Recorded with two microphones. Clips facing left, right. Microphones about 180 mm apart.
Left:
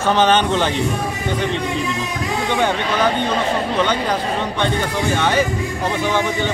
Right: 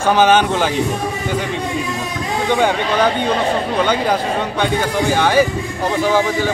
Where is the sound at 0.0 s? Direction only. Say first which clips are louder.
Right 2 dB; 10° right (ahead or behind).